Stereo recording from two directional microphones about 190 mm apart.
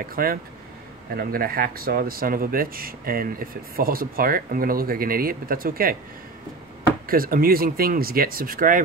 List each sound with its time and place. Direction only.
0.1 s speech: 50° right (ahead or behind)
7.1 s speech: 50° right (ahead or behind)